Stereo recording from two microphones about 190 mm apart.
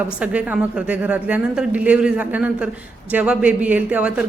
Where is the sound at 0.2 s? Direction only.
10° right (ahead or behind).